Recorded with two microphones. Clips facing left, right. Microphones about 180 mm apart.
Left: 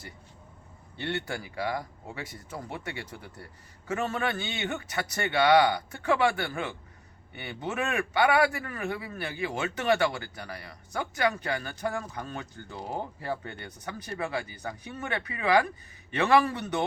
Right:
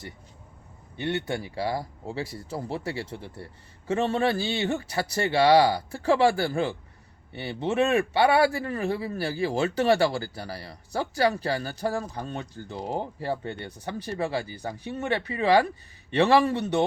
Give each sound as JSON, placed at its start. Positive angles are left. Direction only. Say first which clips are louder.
{"t": 0.9, "sound": "a man's voice", "louder": "right 4 dB", "side_deg": -20}